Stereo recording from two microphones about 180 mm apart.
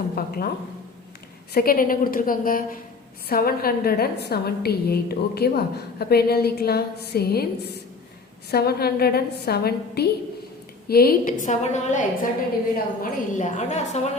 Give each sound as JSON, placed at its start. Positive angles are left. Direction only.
{"t": 0.2, "sound": "a woman's voice", "side_deg": 55}
{"t": 1.5, "sound": "a woman's voice", "side_deg": 55}